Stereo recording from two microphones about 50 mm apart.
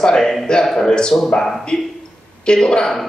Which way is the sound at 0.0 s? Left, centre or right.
Centre.